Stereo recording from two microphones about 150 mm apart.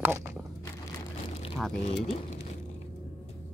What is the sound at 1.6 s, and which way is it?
Speech, 5° left (ahead or behind).